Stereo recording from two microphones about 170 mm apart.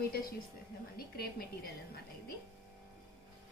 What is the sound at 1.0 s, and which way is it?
Speech, 60° left (ahead or behind).